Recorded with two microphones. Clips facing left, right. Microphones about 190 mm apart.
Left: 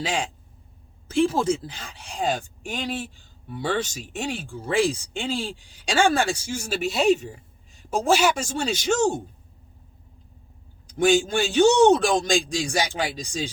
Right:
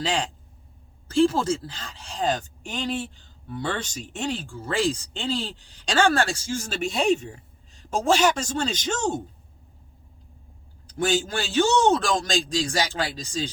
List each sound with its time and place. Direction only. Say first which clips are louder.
0.0 s speech: right 1 dB; 10° left (ahead or behind)
10.9 s speech: left 5 dB; 15° left (ahead or behind)